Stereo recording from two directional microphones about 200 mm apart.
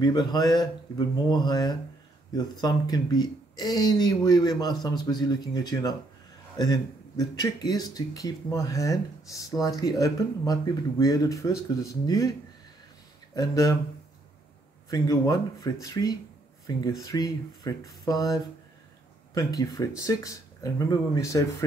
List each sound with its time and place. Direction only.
0.0 s speech: 20° left (ahead or behind)
13.3 s speech: 15° left (ahead or behind)
14.9 s speech: 15° left (ahead or behind)